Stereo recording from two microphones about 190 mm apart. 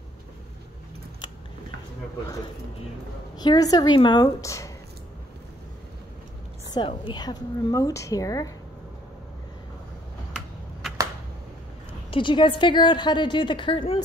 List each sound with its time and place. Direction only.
3.3 s a woman's voice: 20° left (ahead or behind)
6.7 s a woman's voice: 25° left (ahead or behind)
12.1 s a woman's voice: 25° left (ahead or behind)